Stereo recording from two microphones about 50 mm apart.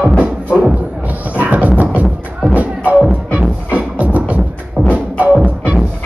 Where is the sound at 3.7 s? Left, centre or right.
Right.